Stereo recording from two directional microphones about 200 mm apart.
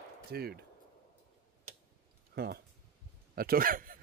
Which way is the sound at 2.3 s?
50° right (ahead or behind).